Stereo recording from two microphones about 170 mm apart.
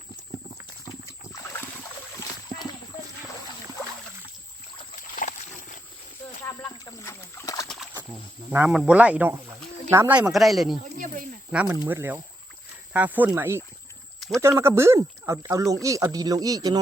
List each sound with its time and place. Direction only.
1.0 s a sound: 15° left (ahead or behind)
4.9 s boat: 55° left (ahead or behind)
6.7 s rowboat: 15° left (ahead or behind)
8.1 s speech: 5° right (ahead or behind)
10.9 s snake: 50° right (ahead or behind)
11.5 s speech: 10° right (ahead or behind)
14.2 s a sound: centre (ahead or behind)
14.4 s speech: 15° right (ahead or behind)